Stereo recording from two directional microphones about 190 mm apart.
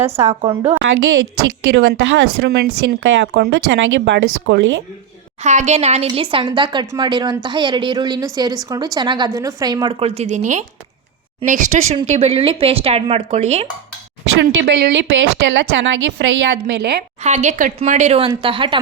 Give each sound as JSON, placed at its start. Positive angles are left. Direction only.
{"t": 0.2, "sound": "speech", "side_deg": -35}
{"t": 0.8, "sound": "a woman's voice", "side_deg": -65}
{"t": 5.4, "sound": "a woman's voice", "side_deg": -35}
{"t": 14.5, "sound": "a woman's voice", "side_deg": -60}
{"t": 16.7, "sound": "speech", "side_deg": -60}
{"t": 17.2, "sound": "a woman's voice", "side_deg": -35}